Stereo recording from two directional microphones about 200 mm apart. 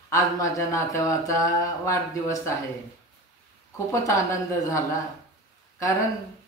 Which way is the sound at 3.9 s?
15° left (ahead or behind).